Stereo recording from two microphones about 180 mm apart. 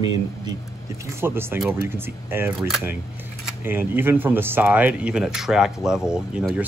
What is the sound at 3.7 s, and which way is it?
Speech, 10° right (ahead or behind).